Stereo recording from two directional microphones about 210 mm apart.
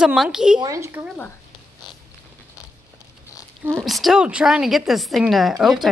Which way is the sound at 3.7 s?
Centre (ahead or behind).